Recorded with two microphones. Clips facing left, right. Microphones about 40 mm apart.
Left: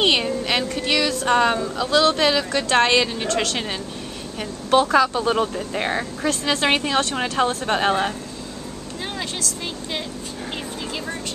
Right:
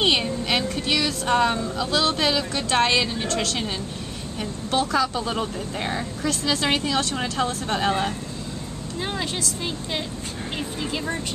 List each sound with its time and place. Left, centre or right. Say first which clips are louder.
0.0 s a woman's voice: left 2 dB; centre; by 8.1 s left